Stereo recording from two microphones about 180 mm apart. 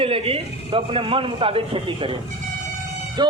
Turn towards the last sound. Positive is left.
turn(degrees=-25)  # may be behind; listen again after turning